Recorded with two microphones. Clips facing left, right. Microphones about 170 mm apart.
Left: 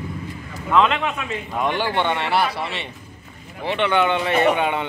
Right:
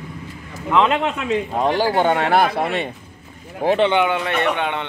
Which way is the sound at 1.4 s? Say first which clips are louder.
Right 1 dB; 35° right (ahead or behind).